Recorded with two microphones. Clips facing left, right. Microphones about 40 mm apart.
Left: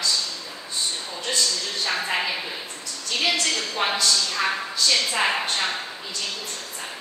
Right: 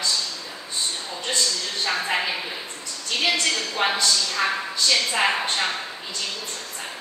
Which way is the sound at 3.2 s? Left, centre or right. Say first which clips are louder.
Right 1 dB; centre.